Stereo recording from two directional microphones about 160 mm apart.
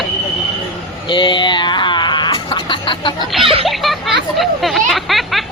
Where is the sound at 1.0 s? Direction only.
30° left (ahead or behind).